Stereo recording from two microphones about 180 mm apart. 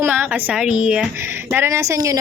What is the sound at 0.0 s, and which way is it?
A woman's voice, 10° right (ahead or behind).